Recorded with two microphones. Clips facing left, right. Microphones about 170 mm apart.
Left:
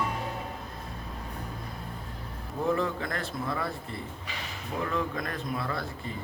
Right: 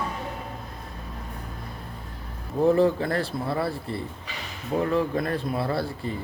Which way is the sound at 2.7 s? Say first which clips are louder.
Right 9 dB; 30° right (ahead or behind).